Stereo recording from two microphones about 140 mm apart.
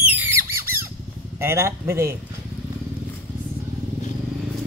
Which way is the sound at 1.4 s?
20° right (ahead or behind).